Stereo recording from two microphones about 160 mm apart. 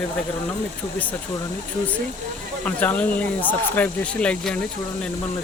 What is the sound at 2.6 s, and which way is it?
Speech, 10° left (ahead or behind).